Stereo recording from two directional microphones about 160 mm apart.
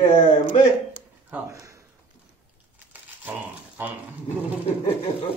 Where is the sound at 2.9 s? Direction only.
10° right (ahead or behind).